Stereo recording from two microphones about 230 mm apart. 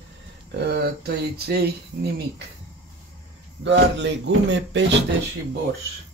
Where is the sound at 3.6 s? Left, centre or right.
Right.